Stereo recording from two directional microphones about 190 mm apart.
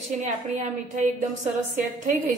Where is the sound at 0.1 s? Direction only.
40° right (ahead or behind).